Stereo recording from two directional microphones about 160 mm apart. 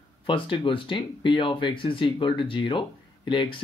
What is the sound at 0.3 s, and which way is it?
Speech, 30° left (ahead or behind).